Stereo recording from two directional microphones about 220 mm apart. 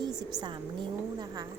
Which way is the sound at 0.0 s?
15° right (ahead or behind).